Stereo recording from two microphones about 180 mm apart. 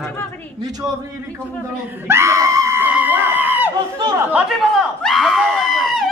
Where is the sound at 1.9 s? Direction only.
10° right (ahead or behind).